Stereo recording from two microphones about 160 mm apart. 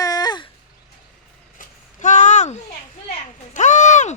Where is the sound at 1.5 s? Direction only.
50° left (ahead or behind).